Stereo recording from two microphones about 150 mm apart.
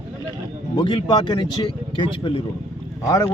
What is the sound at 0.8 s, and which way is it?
Speech, 30° left (ahead or behind).